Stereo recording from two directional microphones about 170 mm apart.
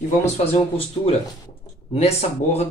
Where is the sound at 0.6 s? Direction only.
35° left (ahead or behind).